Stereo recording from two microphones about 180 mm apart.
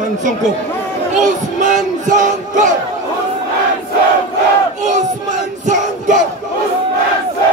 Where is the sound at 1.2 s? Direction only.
45° right (ahead or behind).